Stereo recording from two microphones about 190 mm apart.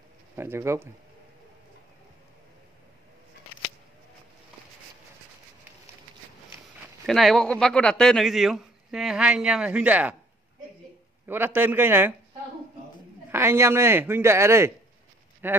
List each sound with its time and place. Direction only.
0.4 s speech: 15° right (ahead or behind)
7.1 s speech: centre (ahead or behind)
11.2 s speech: 10° right (ahead or behind)
13.3 s speech: 15° right (ahead or behind)